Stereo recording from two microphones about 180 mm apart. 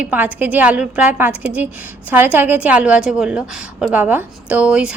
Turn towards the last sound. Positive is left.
turn(degrees=-5)  # may be behind; listen again after turning